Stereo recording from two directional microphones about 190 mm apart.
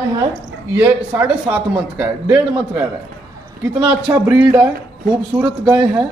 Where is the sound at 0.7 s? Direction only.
10° right (ahead or behind).